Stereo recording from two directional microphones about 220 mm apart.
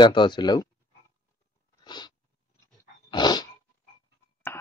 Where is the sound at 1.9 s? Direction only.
20° left (ahead or behind).